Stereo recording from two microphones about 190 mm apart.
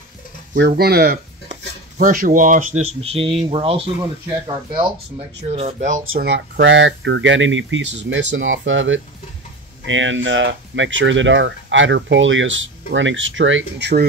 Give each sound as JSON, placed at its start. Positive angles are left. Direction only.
{"t": 0.6, "sound": "speech", "side_deg": -55}
{"t": 1.5, "sound": "speech", "side_deg": -45}
{"t": 5.5, "sound": "speech", "side_deg": -35}
{"t": 6.1, "sound": "speech", "side_deg": -60}